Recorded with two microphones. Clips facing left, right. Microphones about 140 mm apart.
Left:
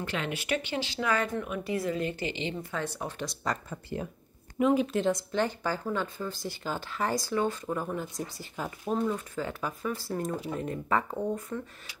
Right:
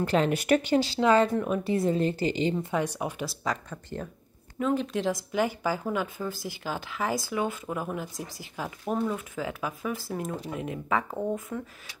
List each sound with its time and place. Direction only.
0.0 s speech: 40° right (ahead or behind)
2.6 s speech: 15° right (ahead or behind)
3.7 s speech: 10° left (ahead or behind)